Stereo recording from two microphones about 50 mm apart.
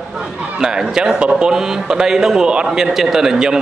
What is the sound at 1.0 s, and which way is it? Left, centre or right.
A man's voice, centre.